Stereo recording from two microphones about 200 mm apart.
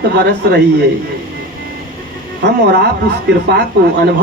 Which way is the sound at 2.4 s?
60° right (ahead or behind).